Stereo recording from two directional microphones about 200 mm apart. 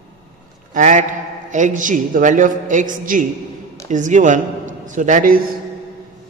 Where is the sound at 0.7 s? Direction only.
40° right (ahead or behind).